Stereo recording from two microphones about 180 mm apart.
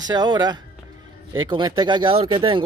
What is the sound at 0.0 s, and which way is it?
Speech, 25° right (ahead or behind).